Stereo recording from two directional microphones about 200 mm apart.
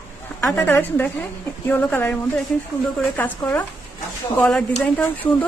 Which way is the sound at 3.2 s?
10° left (ahead or behind).